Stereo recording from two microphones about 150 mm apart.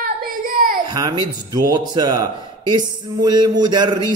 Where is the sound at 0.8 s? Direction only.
30° right (ahead or behind).